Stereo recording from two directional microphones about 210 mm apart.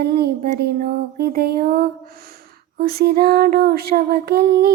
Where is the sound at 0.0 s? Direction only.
50° right (ahead or behind).